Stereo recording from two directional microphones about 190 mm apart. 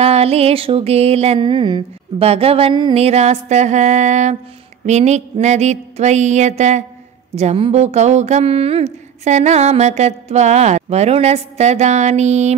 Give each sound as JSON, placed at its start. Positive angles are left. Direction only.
{"t": 0.0, "sound": "speech", "side_deg": -30}